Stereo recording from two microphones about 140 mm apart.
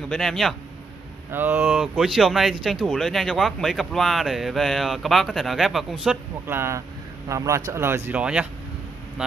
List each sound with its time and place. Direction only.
0.1 s speech: 5° left (ahead or behind)
1.3 s speech: 15° right (ahead or behind)
6.4 s speech: 15° right (ahead or behind)